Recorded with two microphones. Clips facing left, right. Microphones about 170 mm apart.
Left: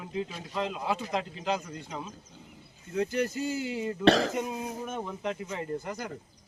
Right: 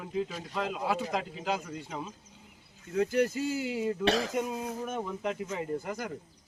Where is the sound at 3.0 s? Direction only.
10° right (ahead or behind).